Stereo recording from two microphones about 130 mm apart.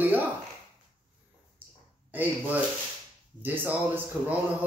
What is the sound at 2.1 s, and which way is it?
A man's voice, 15° right (ahead or behind).